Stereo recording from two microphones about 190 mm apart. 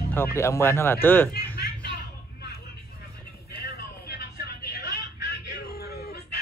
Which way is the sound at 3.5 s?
55° left (ahead or behind).